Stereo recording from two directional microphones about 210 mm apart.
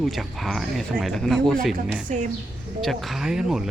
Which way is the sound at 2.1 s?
35° right (ahead or behind).